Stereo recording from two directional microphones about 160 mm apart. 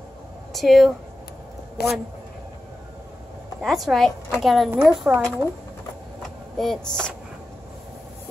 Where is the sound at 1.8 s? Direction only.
90° left.